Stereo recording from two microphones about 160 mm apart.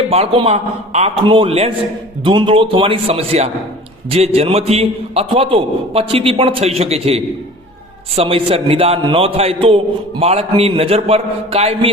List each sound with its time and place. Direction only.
0.1 s a man's voice: 35° right (ahead or behind)